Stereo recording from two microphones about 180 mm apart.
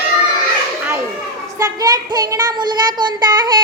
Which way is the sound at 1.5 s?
20° right (ahead or behind).